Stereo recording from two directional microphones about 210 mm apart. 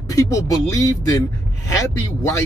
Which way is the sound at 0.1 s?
15° left (ahead or behind).